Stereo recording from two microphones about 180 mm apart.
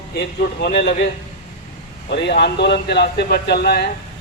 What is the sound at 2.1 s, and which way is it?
A man's voice, 70° left (ahead or behind).